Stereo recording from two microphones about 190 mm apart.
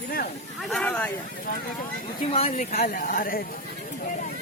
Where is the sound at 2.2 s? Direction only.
30° left (ahead or behind); by 3.5 s 50° left (ahead or behind).